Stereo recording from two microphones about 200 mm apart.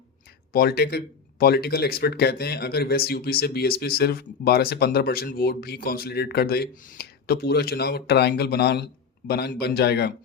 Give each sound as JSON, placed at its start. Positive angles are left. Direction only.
{"t": 0.5, "sound": "speech", "side_deg": 50}